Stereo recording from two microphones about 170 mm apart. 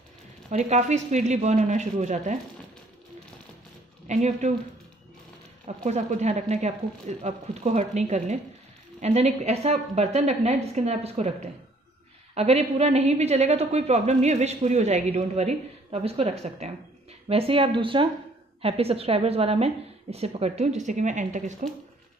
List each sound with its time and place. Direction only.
0.5 s speech: 40° right (ahead or behind)
4.1 s speech: 45° right (ahead or behind)
5.9 s a woman's voice: 45° right (ahead or behind)
12.4 s a woman's voice: 35° right (ahead or behind)